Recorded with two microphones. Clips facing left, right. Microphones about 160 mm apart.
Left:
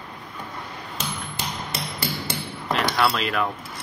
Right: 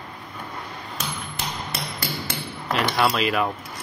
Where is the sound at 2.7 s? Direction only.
5° right (ahead or behind).